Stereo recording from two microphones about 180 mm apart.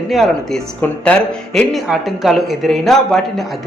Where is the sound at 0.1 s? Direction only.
Centre (ahead or behind).